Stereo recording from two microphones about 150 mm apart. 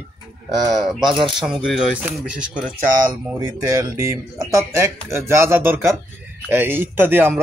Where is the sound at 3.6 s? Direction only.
20° right (ahead or behind).